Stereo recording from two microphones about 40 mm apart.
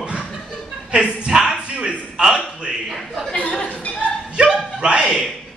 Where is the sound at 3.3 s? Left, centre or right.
Left.